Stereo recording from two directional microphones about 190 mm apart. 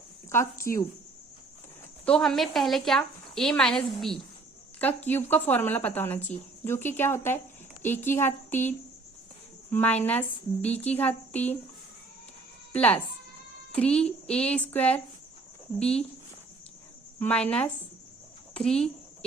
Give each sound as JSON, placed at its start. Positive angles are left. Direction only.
{"t": 0.6, "sound": "a woman's voice", "side_deg": 15}
{"t": 2.0, "sound": "a woman's voice", "side_deg": 5}
{"t": 9.7, "sound": "a woman's voice", "side_deg": 10}
{"t": 12.7, "sound": "a woman's voice", "side_deg": 10}
{"t": 17.2, "sound": "a woman's voice", "side_deg": 5}